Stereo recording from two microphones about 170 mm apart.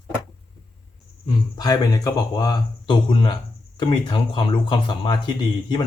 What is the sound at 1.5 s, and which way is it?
Speech, 20° left (ahead or behind).